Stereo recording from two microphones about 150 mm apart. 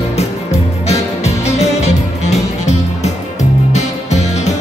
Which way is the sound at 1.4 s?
50° left (ahead or behind).